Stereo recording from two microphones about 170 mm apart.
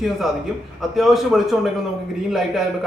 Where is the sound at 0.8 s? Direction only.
Centre (ahead or behind).